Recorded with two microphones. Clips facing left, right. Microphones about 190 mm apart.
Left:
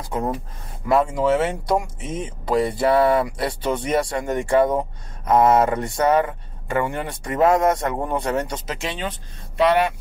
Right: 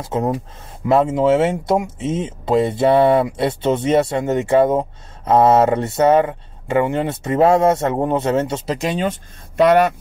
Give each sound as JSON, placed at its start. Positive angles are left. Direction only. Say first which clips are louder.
{"t": 0.0, "sound": "speech", "louder": "right 5 dB", "side_deg": -20}
{"t": 8.7, "sound": "speech", "louder": "right 9 dB", "side_deg": -40}